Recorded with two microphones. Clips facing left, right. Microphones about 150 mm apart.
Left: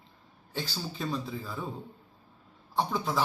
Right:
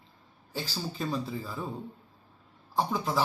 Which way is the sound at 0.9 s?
Centre (ahead or behind).